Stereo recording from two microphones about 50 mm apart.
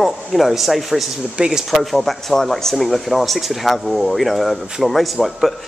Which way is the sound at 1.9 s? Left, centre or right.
Centre.